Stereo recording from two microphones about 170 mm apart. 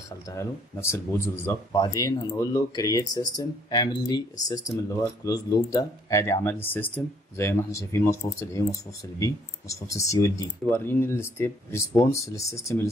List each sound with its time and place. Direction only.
0.3 s speech: 15° left (ahead or behind)